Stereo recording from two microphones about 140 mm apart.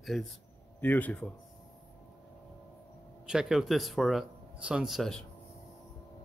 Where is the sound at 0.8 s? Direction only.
10° left (ahead or behind).